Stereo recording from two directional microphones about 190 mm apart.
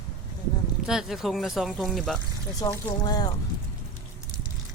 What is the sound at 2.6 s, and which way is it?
Speech, 15° left (ahead or behind).